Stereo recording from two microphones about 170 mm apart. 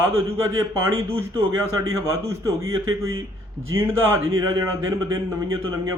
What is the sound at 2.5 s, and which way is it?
A man's voice, 15° right (ahead or behind).